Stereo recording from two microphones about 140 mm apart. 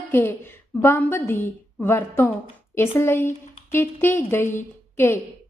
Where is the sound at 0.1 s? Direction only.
15° left (ahead or behind).